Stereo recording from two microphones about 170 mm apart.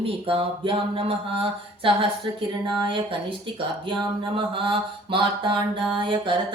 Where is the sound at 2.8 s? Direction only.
30° right (ahead or behind).